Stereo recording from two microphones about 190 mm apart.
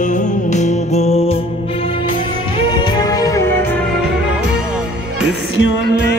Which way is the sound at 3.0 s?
20° left (ahead or behind).